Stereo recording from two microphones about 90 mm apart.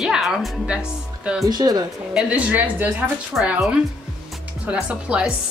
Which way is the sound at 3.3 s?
Centre (ahead or behind).